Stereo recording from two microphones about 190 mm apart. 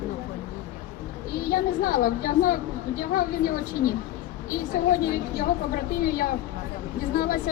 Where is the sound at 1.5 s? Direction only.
45° left (ahead or behind).